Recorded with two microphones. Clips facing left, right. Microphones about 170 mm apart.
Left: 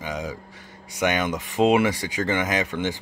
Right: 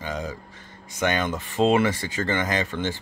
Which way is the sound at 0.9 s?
10° left (ahead or behind).